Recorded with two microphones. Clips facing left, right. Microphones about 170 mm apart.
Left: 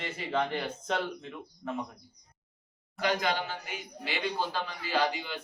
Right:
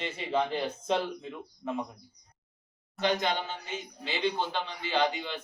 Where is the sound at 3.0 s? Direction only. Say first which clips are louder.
Right 1 dB; 25° right (ahead or behind).